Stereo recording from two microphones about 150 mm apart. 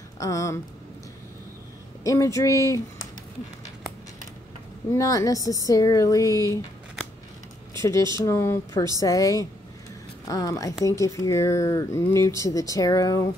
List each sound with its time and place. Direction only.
0.2 s speech: 20° left (ahead or behind)
2.0 s speech: 20° left (ahead or behind)
4.9 s speech: 20° left (ahead or behind)
7.8 s speech: 20° left (ahead or behind)